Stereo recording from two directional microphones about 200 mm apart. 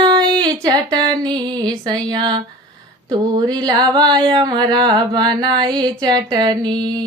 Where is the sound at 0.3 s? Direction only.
20° right (ahead or behind).